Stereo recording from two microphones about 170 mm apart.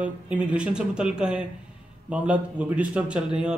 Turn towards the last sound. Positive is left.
turn(degrees=-5)  # may be behind; listen again after turning